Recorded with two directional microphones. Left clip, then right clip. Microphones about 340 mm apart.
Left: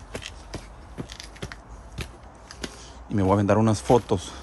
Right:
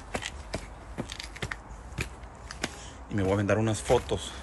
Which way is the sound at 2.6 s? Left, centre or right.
Centre.